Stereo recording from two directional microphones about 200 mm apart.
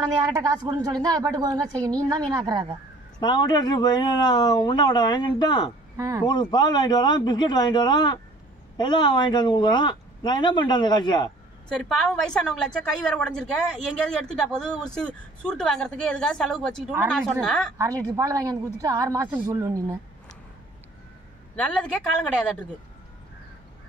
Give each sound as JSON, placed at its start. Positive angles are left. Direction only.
{"t": 0.0, "sound": "speech", "side_deg": -20}
{"t": 3.2, "sound": "speech", "side_deg": 20}
{"t": 5.9, "sound": "speech", "side_deg": -15}
{"t": 6.2, "sound": "speech", "side_deg": 20}
{"t": 11.7, "sound": "speech", "side_deg": 5}
{"t": 18.0, "sound": "speech", "side_deg": -15}